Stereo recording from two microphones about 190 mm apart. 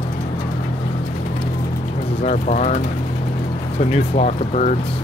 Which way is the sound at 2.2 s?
40° left (ahead or behind).